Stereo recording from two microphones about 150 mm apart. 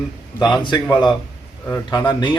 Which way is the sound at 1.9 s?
30° left (ahead or behind).